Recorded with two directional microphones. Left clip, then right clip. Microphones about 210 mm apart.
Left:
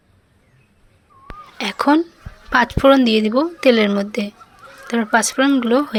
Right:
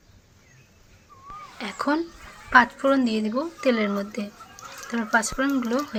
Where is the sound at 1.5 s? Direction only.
35° left (ahead or behind).